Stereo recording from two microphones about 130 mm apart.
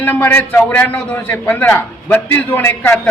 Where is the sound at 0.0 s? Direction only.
15° left (ahead or behind).